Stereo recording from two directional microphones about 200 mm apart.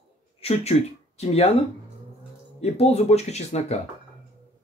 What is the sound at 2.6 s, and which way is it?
Speech, 30° left (ahead or behind).